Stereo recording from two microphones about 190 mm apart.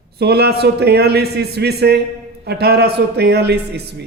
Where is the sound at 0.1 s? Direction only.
60° right (ahead or behind).